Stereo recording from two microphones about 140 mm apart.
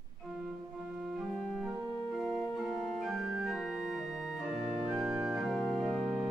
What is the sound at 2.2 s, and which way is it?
Organ, 5° left (ahead or behind).